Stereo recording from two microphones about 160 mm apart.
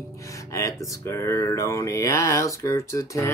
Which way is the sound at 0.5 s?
20° left (ahead or behind).